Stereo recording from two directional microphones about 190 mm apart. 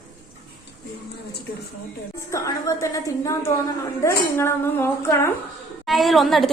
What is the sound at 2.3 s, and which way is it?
Speech, 15° left (ahead or behind).